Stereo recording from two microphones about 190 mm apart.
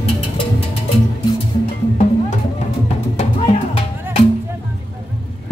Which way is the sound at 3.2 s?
35° left (ahead or behind).